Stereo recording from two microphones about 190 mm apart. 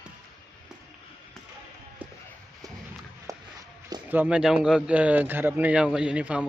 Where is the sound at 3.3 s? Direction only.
15° right (ahead or behind).